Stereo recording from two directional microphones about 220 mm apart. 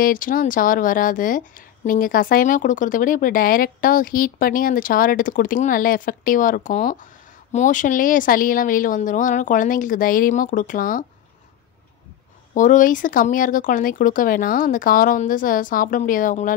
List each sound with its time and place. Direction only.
0.0 s speech: 40° left (ahead or behind)
12.5 s speech: 35° left (ahead or behind)